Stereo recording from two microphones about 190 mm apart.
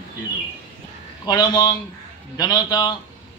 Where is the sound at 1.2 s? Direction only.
20° left (ahead or behind).